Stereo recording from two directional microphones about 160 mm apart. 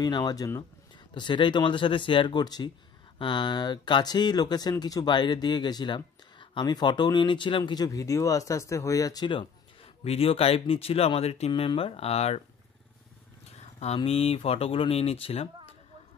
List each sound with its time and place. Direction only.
0.0 s speech: 25° left (ahead or behind); by 12.4 s 40° left (ahead or behind)
13.7 s speech: 40° left (ahead or behind)